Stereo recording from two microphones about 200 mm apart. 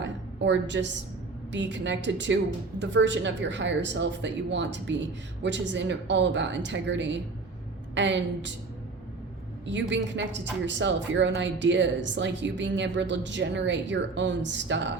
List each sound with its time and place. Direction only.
0.0 s a sound: 65° right (ahead or behind)
1.5 s a woman's voice: 65° right (ahead or behind)
9.6 s a woman's voice: 65° right (ahead or behind)